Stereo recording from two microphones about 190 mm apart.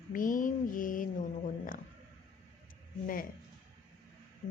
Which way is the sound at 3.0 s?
50° left (ahead or behind).